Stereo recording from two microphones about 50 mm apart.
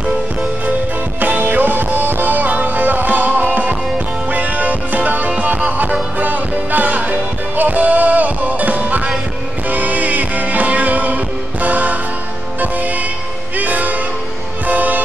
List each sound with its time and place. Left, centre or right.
1.2 s music: right
13.6 s music: right